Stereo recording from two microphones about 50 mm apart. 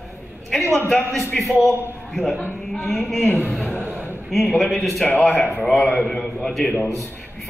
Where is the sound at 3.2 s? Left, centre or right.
Left.